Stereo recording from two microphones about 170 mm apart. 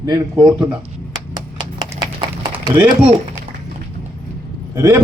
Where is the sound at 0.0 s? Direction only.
20° right (ahead or behind).